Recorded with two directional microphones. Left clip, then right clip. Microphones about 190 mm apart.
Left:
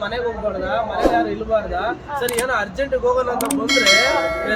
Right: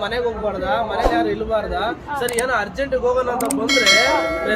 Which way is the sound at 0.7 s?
10° right (ahead or behind).